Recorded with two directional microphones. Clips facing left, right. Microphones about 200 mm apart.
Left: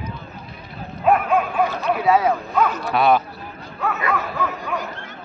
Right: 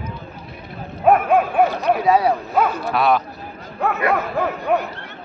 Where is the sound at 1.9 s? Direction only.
35° right (ahead or behind).